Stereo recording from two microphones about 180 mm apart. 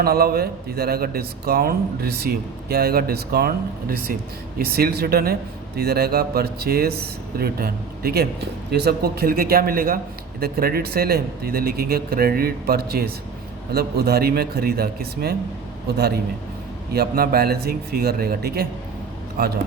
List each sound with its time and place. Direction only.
0.0 s speech: 55° right (ahead or behind)
16.9 s speech: 60° right (ahead or behind)